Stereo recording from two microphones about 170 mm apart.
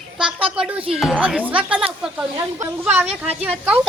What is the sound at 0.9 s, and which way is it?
Speech, 5° right (ahead or behind).